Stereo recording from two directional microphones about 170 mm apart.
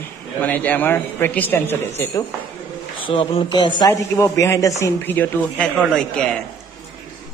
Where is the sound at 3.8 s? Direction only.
20° left (ahead or behind).